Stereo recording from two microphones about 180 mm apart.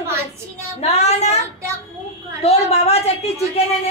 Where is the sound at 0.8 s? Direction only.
35° left (ahead or behind).